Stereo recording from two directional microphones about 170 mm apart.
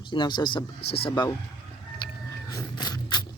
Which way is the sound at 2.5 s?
20° left (ahead or behind).